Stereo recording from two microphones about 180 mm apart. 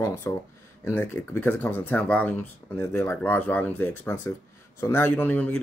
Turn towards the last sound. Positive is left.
turn(degrees=10)  # may be behind; listen again after turning